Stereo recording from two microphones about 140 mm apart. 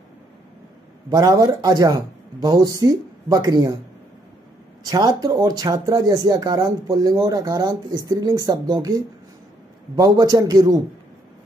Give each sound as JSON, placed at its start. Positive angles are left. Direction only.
{"t": 1.1, "sound": "speech", "side_deg": -25}
{"t": 4.8, "sound": "speech", "side_deg": -25}